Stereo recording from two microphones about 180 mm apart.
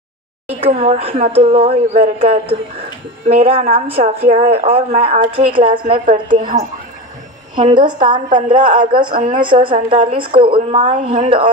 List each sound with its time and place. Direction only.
0.6 s speech: 30° right (ahead or behind)
3.7 s speech: 30° right (ahead or behind)
6.3 s speech: 40° right (ahead or behind)
7.5 s a woman's voice: 25° right (ahead or behind)